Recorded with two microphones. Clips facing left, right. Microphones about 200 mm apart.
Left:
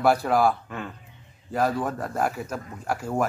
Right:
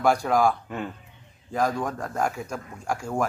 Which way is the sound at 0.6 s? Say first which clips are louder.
Right 3 dB; 20° right (ahead or behind).